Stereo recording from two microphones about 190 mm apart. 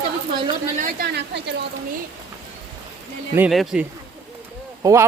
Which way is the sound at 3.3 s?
5° right (ahead or behind).